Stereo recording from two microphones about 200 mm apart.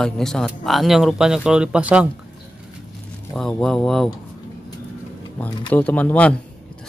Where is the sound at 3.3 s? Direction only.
Centre (ahead or behind).